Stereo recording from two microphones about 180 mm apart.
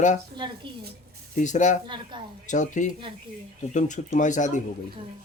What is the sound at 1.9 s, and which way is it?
Speech, 25° right (ahead or behind).